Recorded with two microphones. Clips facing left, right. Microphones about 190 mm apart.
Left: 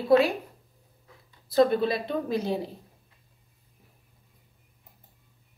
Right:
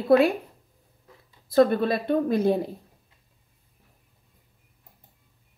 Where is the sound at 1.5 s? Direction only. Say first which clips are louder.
Right 2 dB; 55° right (ahead or behind).